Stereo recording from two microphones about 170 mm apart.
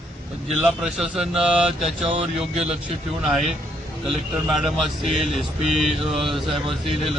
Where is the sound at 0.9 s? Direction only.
Centre (ahead or behind).